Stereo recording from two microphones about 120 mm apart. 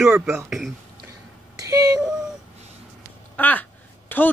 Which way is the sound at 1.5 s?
30° right (ahead or behind).